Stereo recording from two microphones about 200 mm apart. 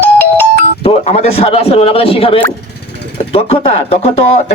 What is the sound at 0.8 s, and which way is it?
Speech, 30° left (ahead or behind).